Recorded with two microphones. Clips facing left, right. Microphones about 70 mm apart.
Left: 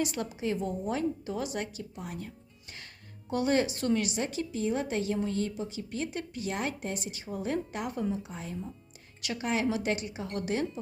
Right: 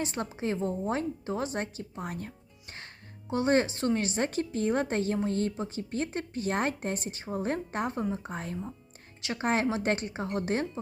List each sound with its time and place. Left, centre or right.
0.0 s speech: right
3.2 s speech: right